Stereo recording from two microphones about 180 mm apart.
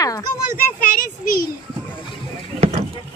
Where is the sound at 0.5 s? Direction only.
50° left (ahead or behind).